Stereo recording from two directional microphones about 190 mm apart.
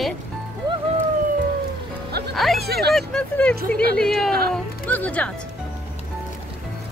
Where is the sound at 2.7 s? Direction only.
55° right (ahead or behind).